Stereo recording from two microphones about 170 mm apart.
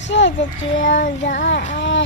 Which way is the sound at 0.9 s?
50° left (ahead or behind).